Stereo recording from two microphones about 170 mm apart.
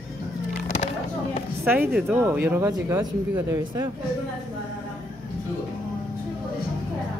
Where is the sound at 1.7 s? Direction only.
10° right (ahead or behind).